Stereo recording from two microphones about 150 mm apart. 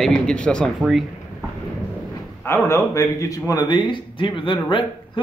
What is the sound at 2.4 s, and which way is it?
Speech, 15° left (ahead or behind).